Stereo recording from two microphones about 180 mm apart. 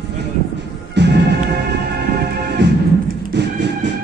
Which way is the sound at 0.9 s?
70° right (ahead or behind).